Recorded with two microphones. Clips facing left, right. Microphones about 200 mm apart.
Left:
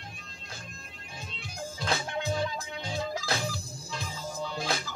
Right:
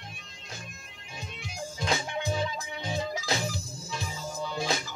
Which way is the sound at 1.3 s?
15° right (ahead or behind).